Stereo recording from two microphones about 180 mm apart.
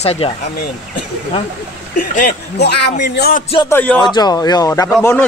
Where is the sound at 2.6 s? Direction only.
65° left (ahead or behind).